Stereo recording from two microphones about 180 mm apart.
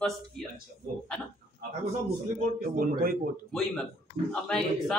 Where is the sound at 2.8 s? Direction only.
55° right (ahead or behind).